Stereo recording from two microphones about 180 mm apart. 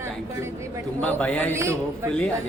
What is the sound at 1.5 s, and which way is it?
Speech, 15° right (ahead or behind).